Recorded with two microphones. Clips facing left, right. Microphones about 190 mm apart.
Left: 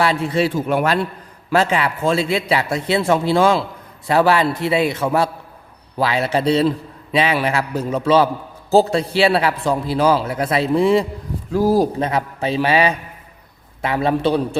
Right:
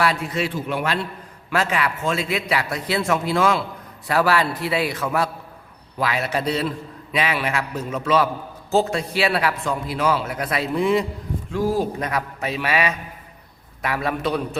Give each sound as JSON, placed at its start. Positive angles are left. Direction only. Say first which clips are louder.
{"t": 0.0, "sound": "a man's voice", "louder": "left 5 dB", "side_deg": 30}
{"t": 0.5, "sound": "a man's voice", "louder": "left 6 dB", "side_deg": 45}
{"t": 1.5, "sound": "a man's voice", "louder": "left 5 dB", "side_deg": 30}
{"t": 12.0, "sound": "a man's voice", "louder": "left 5 dB", "side_deg": 30}